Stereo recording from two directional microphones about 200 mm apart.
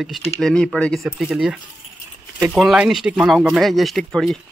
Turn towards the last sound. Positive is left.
turn(degrees=5)  # may be behind; listen again after turning